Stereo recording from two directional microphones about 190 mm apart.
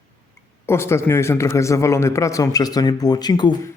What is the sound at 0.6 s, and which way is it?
A man's voice, 15° left (ahead or behind).